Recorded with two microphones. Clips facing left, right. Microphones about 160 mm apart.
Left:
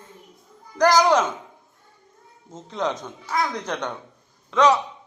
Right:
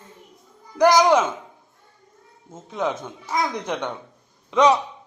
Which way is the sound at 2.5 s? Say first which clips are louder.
Right 1 dB; 5° right (ahead or behind).